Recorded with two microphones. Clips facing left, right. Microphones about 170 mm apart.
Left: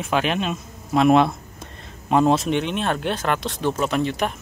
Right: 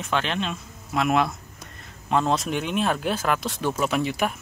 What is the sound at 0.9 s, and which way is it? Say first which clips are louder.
Speech: left 7 dB; 25° left (ahead or behind).